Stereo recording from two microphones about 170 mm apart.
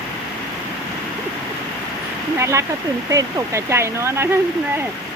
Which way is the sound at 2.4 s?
15° right (ahead or behind).